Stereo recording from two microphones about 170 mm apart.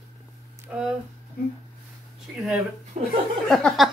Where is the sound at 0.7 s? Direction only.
10° right (ahead or behind).